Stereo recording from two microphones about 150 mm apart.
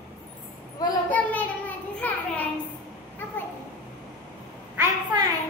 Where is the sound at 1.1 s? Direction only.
10° left (ahead or behind).